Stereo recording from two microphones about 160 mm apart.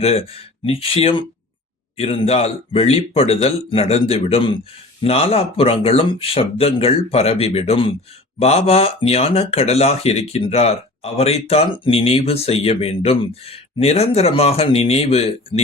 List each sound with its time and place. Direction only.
0.0 s speech: 40° left (ahead or behind)